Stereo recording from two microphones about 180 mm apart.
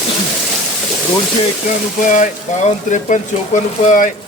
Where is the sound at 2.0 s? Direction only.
45° left (ahead or behind).